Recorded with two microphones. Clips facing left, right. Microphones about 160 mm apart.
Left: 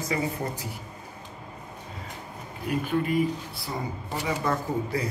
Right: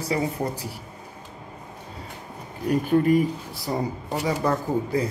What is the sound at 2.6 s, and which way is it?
Speech, 40° right (ahead or behind).